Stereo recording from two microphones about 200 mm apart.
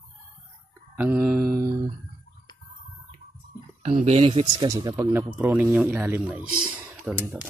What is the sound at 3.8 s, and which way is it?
Speech, 30° right (ahead or behind).